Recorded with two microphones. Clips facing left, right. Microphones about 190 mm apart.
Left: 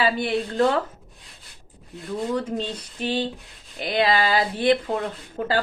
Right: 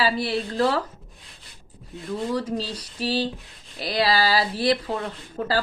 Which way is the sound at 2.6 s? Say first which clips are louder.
Left 1 dB; 35° right (ahead or behind).